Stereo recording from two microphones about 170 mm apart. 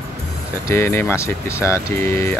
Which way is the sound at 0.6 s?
15° left (ahead or behind).